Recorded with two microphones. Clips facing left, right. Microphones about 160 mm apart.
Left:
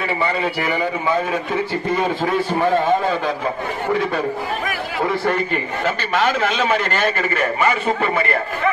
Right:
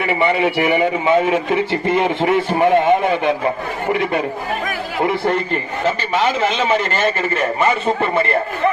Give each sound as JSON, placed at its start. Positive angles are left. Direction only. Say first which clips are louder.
{"t": 0.0, "sound": "speech", "louder": "right 4 dB", "side_deg": -20}